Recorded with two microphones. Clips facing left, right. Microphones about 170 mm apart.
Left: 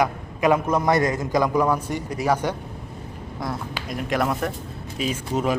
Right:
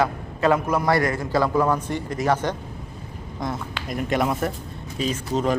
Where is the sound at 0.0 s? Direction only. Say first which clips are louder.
Even; 15° left (ahead or behind); by 4.5 s centre (ahead or behind).